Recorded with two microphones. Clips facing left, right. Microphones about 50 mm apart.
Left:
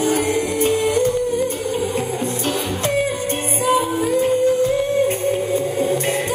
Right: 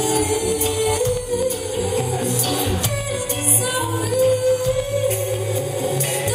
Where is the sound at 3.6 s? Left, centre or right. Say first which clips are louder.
Left 7 dB; left.